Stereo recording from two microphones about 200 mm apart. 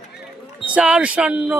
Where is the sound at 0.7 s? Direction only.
5° right (ahead or behind).